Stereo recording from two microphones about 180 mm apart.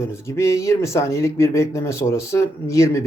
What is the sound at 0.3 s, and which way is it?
Speech, 15° left (ahead or behind).